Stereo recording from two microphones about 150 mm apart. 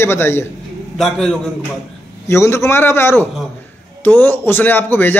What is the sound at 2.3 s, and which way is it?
A man's voice, 15° left (ahead or behind).